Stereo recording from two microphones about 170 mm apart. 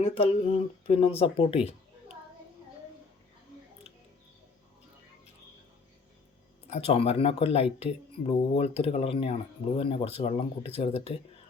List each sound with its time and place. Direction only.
0.0 s speech: 35° left (ahead or behind)
6.7 s speech: 35° left (ahead or behind)